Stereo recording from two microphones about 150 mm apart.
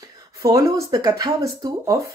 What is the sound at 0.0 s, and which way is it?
Speech, 25° right (ahead or behind).